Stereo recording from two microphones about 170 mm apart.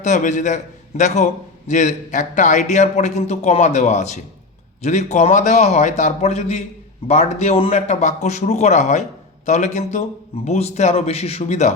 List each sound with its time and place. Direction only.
0.0 s a man's voice: 45° left (ahead or behind)